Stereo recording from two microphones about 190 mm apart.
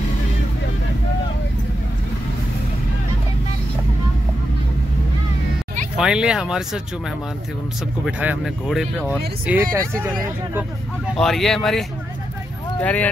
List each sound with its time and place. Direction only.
5.9 s speech: 5° right (ahead or behind)
8.0 s speech: 5° right (ahead or behind)
11.1 s speech: centre (ahead or behind)
12.8 s speech: 10° left (ahead or behind)